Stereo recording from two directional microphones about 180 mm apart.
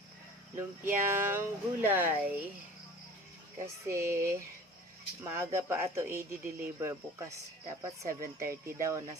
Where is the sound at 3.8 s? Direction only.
15° right (ahead or behind).